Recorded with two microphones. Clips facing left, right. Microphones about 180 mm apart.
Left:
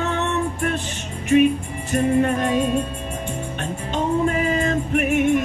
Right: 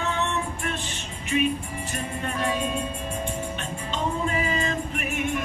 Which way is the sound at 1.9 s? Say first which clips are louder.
Left 15 dB; 45° left (ahead or behind).